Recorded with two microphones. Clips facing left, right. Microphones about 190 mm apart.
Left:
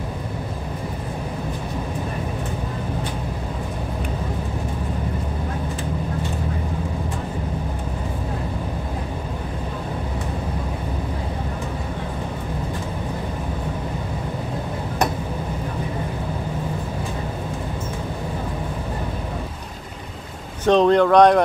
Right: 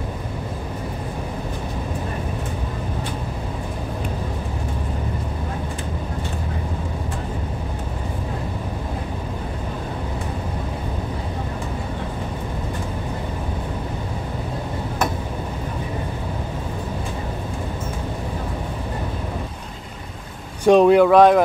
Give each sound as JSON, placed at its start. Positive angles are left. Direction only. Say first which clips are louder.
{"t": 20.6, "sound": "speech", "louder": "right 3 dB", "side_deg": -10}